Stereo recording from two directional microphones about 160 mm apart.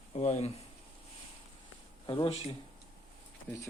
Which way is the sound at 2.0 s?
30° left (ahead or behind).